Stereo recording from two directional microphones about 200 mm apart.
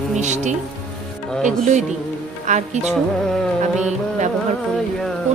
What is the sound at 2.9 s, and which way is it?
Music, centre (ahead or behind).